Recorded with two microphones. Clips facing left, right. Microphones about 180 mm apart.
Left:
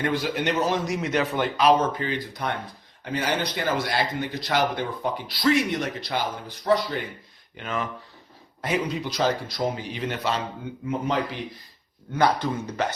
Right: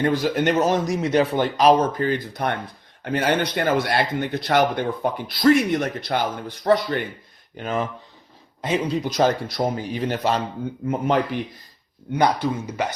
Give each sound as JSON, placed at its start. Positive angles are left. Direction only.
{"t": 0.0, "sound": "speech", "side_deg": -40}
{"t": 1.0, "sound": "speech", "side_deg": -30}
{"t": 7.5, "sound": "speech", "side_deg": -35}
{"t": 8.6, "sound": "speech", "side_deg": -25}
{"t": 9.0, "sound": "speech", "side_deg": -50}
{"t": 10.8, "sound": "speech", "side_deg": -55}
{"t": 12.1, "sound": "speech", "side_deg": -15}